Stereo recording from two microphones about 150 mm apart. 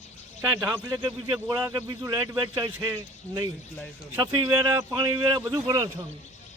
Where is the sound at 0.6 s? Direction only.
25° right (ahead or behind).